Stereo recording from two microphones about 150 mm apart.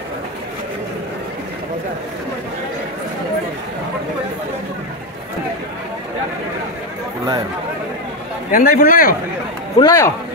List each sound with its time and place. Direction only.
8.5 s a man's voice: 75° left (ahead or behind)
9.8 s speech: 20° left (ahead or behind)